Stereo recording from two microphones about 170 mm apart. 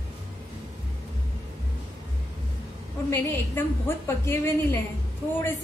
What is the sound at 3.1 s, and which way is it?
A woman's voice, 15° left (ahead or behind).